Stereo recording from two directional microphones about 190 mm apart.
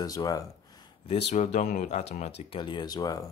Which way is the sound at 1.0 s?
30° left (ahead or behind).